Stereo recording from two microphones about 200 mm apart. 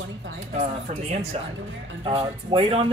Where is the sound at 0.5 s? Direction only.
35° right (ahead or behind).